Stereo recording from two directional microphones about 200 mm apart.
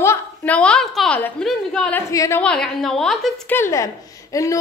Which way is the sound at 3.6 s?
15° left (ahead or behind).